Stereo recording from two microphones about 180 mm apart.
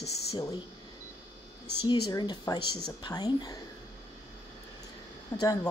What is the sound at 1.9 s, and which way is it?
Speech, 25° left (ahead or behind).